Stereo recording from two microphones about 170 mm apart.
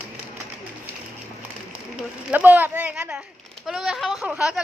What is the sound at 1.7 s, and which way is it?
Speech, 10° right (ahead or behind).